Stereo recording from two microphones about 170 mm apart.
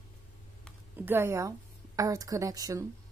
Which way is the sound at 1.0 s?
15° right (ahead or behind).